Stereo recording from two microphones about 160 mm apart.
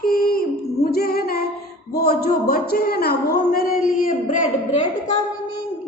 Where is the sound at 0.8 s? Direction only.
75° left (ahead or behind).